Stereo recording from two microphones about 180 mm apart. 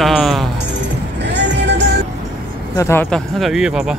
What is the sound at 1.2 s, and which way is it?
Music, 75° right (ahead or behind).